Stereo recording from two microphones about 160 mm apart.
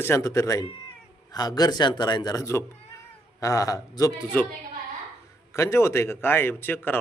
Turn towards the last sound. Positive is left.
turn(degrees=10)  # may be behind; listen again after turning